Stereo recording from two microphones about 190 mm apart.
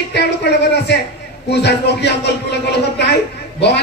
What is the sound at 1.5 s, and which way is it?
Speech, 60° left (ahead or behind).